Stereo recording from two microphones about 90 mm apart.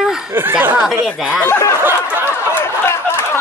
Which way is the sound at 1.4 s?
25° left (ahead or behind).